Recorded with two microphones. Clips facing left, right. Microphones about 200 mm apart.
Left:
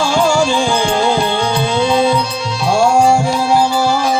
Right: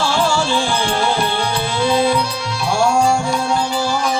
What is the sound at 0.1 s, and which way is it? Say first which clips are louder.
Music: left 4 dB; 15° left (ahead or behind).